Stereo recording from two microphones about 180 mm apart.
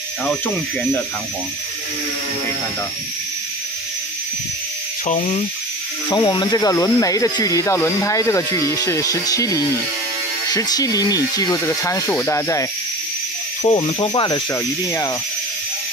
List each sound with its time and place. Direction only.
5.0 s speech: 35° left (ahead or behind)
6.0 s speech: 20° left (ahead or behind)
13.6 s speech: 30° left (ahead or behind)